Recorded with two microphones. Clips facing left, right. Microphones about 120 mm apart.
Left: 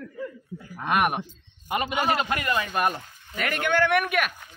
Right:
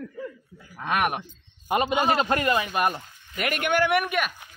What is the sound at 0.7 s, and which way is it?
Speech, 5° left (ahead or behind).